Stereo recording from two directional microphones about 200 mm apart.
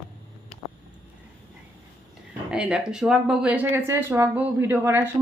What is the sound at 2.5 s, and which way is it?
Speech, 5° right (ahead or behind).